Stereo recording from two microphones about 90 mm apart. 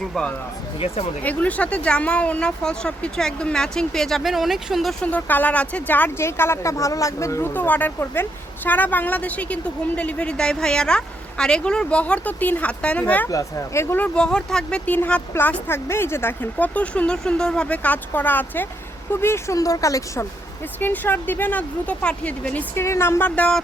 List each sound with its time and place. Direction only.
1.2 s a woman's voice: 15° left (ahead or behind); by 4.9 s centre (ahead or behind)
5.0 s speech: 20° left (ahead or behind)
7.5 s a woman's voice: 20° left (ahead or behind)
13.2 s speech: 30° left (ahead or behind)
14.0 s a woman's voice: 10° left (ahead or behind); by 19.5 s 25° left (ahead or behind)
19.5 s speech: 40° left (ahead or behind)
20.7 s speech: 20° left (ahead or behind)
22.7 s speech: 30° left (ahead or behind)